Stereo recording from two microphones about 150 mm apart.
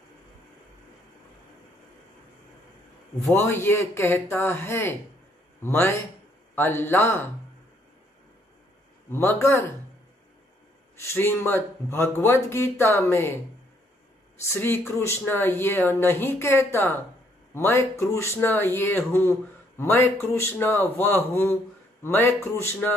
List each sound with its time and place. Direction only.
3.3 s speech: 15° left (ahead or behind)
9.1 s speech: 15° left (ahead or behind)
11.0 s speech: 15° left (ahead or behind)
14.5 s speech: 15° left (ahead or behind)